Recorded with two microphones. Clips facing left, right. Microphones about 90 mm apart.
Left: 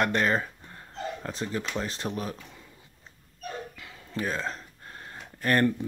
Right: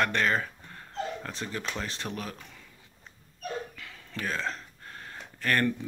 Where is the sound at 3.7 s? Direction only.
25° left (ahead or behind).